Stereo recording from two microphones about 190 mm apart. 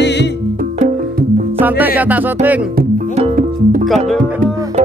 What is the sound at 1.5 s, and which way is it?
Music, 10° right (ahead or behind).